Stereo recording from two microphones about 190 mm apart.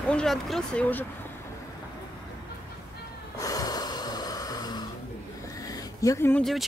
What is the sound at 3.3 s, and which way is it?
Snort, 20° left (ahead or behind).